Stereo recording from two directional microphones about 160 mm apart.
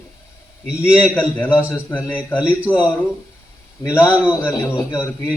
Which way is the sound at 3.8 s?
20° left (ahead or behind).